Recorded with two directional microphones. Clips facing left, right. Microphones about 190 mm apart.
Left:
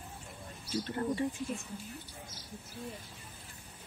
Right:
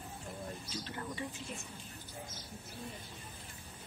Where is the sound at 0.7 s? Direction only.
45° left (ahead or behind).